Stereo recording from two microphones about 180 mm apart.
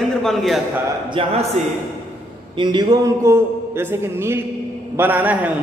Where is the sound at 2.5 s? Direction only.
25° right (ahead or behind); by 5.5 s 10° right (ahead or behind).